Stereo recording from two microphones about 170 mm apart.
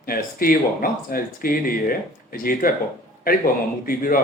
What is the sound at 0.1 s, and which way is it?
Speech, 60° left (ahead or behind).